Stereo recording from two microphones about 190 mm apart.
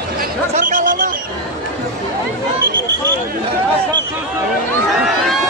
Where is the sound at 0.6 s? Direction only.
45° right (ahead or behind).